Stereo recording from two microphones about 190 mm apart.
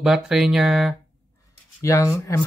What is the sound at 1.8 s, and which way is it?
Speech, 15° left (ahead or behind).